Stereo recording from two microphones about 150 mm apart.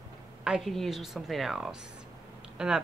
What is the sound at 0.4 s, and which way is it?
Speech, centre (ahead or behind).